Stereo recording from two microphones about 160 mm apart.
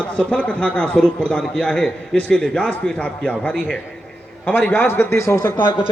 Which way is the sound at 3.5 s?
Centre (ahead or behind).